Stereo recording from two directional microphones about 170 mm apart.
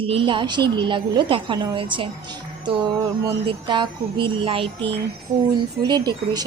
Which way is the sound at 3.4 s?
30° right (ahead or behind).